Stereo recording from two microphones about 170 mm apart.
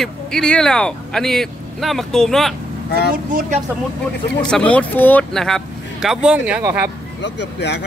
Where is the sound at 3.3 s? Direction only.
50° right (ahead or behind).